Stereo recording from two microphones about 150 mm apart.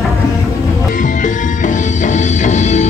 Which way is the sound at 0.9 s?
60° left (ahead or behind).